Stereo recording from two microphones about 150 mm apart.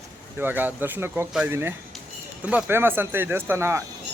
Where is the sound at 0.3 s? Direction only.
10° right (ahead or behind).